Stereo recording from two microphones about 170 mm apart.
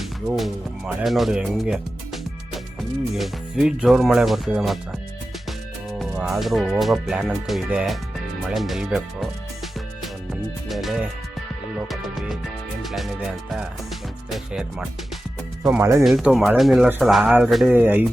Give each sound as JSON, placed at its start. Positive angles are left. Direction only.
{"t": 0.0, "sound": "music", "side_deg": 0}
{"t": 0.9, "sound": "speech", "side_deg": 0}
{"t": 3.2, "sound": "speech", "side_deg": -5}
{"t": 10.7, "sound": "speech", "side_deg": 0}
{"t": 15.7, "sound": "speech", "side_deg": -15}
{"t": 16.0, "sound": "speech", "side_deg": 0}
{"t": 17.7, "sound": "speech", "side_deg": -10}